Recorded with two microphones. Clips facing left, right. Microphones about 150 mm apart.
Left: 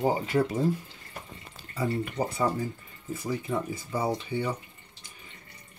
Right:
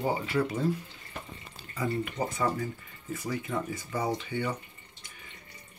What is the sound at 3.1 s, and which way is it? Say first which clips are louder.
Speech: left 2 dB; 10° left (ahead or behind).